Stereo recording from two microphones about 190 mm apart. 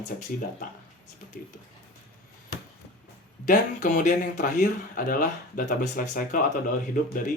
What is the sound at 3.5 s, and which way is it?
Speech, 40° left (ahead or behind).